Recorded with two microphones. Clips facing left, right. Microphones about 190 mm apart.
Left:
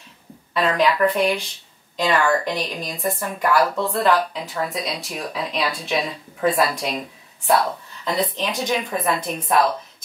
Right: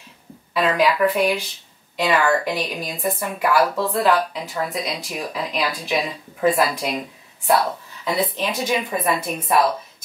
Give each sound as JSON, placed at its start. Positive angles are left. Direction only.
{"t": 0.6, "sound": "a woman's voice", "side_deg": -5}